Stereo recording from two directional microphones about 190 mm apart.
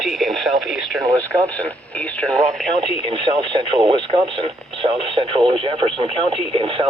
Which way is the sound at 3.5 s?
25° right (ahead or behind).